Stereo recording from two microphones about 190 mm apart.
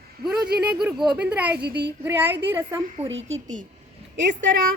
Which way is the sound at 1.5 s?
60° right (ahead or behind).